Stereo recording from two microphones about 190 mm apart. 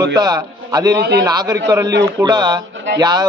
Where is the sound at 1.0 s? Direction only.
65° right (ahead or behind).